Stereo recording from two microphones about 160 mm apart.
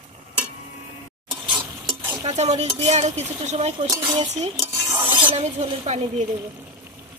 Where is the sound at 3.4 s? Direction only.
40° right (ahead or behind).